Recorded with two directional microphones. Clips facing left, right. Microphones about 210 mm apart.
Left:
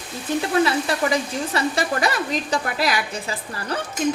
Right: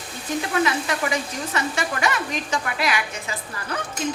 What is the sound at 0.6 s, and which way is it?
Speech, 35° left (ahead or behind).